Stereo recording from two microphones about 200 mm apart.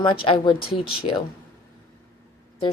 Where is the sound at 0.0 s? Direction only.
25° left (ahead or behind).